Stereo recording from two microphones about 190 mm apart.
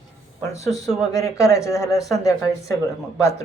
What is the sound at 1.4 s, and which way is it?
Speech, 15° left (ahead or behind).